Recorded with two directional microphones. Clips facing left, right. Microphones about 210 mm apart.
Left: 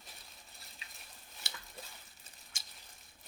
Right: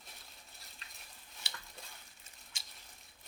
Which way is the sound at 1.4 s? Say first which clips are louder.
Left 2 dB; 45° left (ahead or behind).